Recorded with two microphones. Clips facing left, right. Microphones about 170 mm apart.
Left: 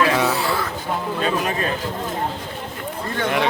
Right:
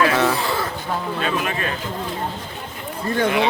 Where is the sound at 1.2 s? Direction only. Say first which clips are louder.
Left 4 dB; 35° left (ahead or behind).